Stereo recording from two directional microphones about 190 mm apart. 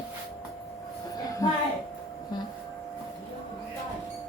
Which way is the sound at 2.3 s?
20° left (ahead or behind).